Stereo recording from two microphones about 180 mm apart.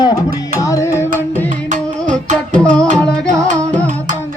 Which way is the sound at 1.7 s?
40° right (ahead or behind).